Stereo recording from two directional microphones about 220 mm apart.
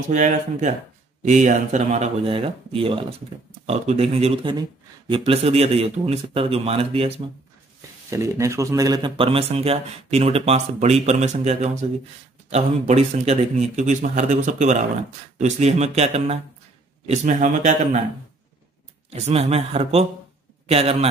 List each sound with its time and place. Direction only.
0.1 s speech: 35° right (ahead or behind)
8.1 s speech: 15° right (ahead or behind); by 18.0 s 30° right (ahead or behind)
19.0 s a man's voice: 30° right (ahead or behind)